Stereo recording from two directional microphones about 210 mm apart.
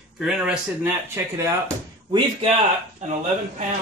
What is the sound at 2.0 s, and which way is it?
Speech, 25° right (ahead or behind).